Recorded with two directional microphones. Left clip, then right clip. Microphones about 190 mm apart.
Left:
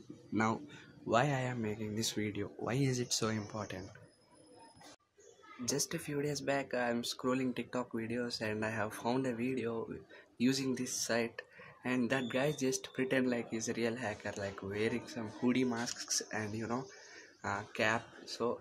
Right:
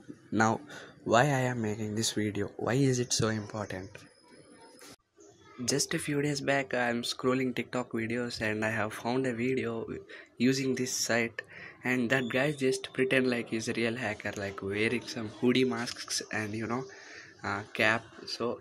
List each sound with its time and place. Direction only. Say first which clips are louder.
0.3 s speech: right 7 dB; 25° right (ahead or behind)
5.7 s speech: right 7 dB; 15° right (ahead or behind)